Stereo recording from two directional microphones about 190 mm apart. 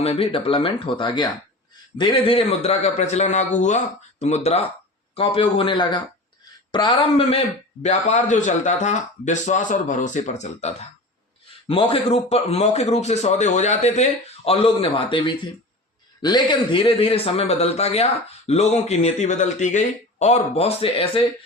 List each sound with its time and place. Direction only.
0.0 s speech: 30° left (ahead or behind)